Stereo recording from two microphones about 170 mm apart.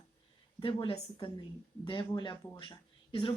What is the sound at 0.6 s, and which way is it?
A woman's voice, 30° left (ahead or behind).